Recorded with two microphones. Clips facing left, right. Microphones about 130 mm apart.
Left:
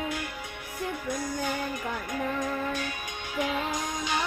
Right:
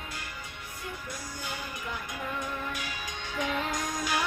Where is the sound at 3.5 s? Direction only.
Centre (ahead or behind).